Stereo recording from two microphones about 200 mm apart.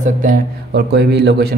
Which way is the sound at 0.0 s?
40° right (ahead or behind).